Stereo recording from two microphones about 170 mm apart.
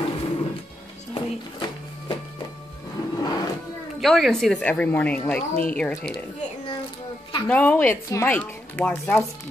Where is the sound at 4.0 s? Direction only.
Centre (ahead or behind).